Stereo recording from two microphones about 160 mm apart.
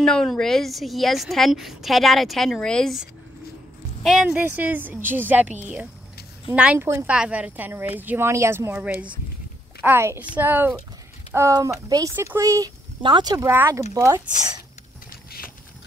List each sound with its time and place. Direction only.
0.0 s a woman's voice: 5° left (ahead or behind); by 13.5 s 25° right (ahead or behind)
13.5 s a woman's voice: 15° right (ahead or behind)